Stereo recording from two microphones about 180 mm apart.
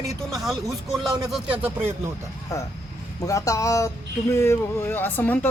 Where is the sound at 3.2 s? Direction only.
20° left (ahead or behind).